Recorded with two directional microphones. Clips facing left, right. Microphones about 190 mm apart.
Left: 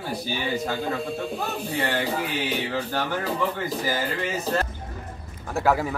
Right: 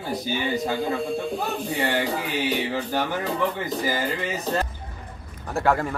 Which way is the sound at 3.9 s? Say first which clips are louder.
Right 1 dB; 15° right (ahead or behind).